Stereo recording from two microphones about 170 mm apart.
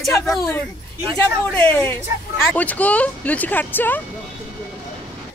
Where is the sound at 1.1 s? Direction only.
10° left (ahead or behind).